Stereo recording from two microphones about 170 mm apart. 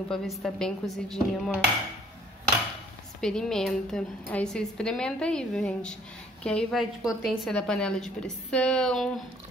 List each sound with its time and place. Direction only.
0.1 s a woman's voice: 5° left (ahead or behind)
3.2 s a woman's voice: 5° left (ahead or behind)